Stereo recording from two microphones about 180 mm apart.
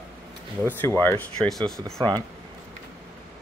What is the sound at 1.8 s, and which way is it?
Speech, 15° right (ahead or behind).